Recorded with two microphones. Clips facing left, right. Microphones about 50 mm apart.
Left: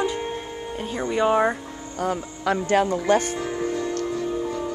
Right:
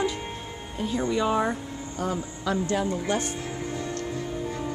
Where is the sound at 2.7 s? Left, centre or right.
Left.